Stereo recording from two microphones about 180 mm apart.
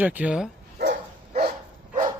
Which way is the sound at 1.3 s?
60° right (ahead or behind).